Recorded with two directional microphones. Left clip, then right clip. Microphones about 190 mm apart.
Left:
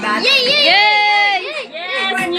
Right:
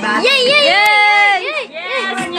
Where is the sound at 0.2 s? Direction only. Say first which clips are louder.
Right 2 dB; 35° right (ahead or behind).